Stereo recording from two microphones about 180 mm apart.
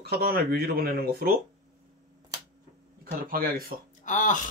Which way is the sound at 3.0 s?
55° right (ahead or behind).